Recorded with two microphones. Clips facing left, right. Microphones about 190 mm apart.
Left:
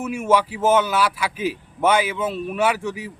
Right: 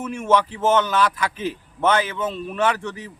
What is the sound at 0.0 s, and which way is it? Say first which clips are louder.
A man's voice: left 1 dB; 10° left (ahead or behind).